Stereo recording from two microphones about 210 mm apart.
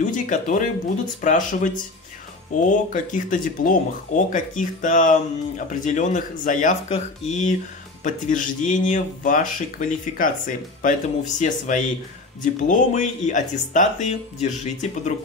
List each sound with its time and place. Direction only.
0.0 s music: 35° left (ahead or behind)
1.2 s speech: 40° left (ahead or behind)
2.9 s speech: 40° left (ahead or behind)